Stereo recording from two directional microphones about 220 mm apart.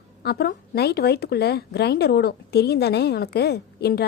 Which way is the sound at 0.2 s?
45° left (ahead or behind).